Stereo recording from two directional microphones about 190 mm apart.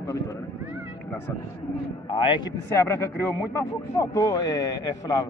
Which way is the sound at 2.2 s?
25° left (ahead or behind).